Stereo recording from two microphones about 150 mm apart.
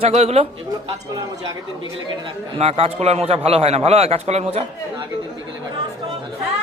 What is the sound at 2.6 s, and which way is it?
A man's voice, 40° right (ahead or behind).